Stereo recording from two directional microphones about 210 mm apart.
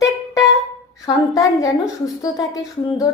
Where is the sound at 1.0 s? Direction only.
15° left (ahead or behind).